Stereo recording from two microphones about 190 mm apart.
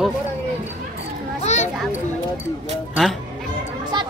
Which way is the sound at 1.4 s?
35° left (ahead or behind).